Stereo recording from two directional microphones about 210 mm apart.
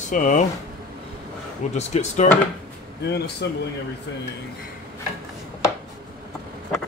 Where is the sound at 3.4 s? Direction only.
55° left (ahead or behind).